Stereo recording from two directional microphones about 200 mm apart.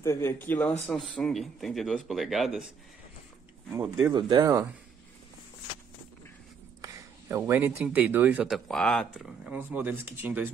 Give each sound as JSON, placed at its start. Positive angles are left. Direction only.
{"t": 0.0, "sound": "a man's voice", "side_deg": 15}
{"t": 3.7, "sound": "speech", "side_deg": -15}
{"t": 6.8, "sound": "speech", "side_deg": -15}